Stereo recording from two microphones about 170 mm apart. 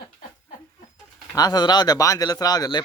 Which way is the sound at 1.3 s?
25° left (ahead or behind).